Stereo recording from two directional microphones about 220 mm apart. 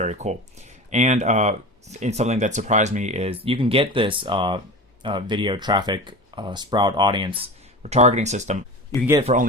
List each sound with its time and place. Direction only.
0.0 s speech: 30° right (ahead or behind)